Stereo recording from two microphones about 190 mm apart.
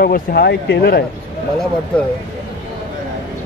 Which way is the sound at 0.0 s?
55° left (ahead or behind).